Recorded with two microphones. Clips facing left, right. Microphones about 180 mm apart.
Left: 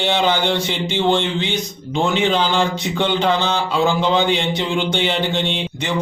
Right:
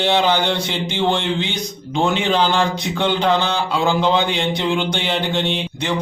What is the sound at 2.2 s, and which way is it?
A man's voice, centre (ahead or behind).